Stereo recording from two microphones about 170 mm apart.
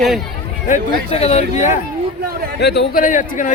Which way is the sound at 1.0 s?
35° left (ahead or behind).